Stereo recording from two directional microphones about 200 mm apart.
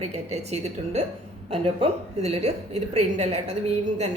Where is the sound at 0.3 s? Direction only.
35° right (ahead or behind).